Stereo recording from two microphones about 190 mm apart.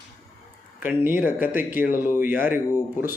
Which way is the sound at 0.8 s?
10° right (ahead or behind).